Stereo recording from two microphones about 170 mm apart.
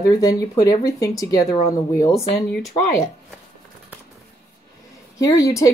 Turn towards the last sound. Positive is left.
turn(degrees=20)  # may be behind; listen again after turning